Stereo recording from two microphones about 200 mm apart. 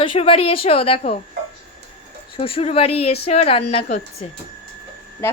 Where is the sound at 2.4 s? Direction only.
30° left (ahead or behind).